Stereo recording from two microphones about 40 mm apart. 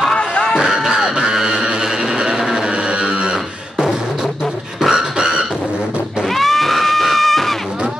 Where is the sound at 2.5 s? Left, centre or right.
Right.